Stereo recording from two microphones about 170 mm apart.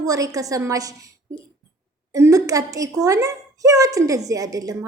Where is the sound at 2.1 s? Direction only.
20° right (ahead or behind).